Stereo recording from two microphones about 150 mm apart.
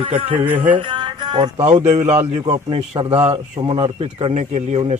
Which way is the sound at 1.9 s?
50° right (ahead or behind).